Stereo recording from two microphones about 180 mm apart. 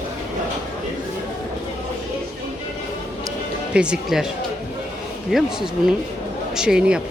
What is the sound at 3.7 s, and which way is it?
Speech, 5° right (ahead or behind).